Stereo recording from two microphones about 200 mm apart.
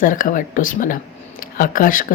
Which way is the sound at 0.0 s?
40° left (ahead or behind).